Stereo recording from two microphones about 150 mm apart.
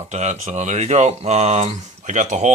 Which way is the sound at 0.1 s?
45° right (ahead or behind).